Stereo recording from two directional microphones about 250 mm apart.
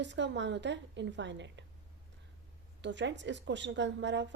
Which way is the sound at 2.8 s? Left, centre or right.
Right.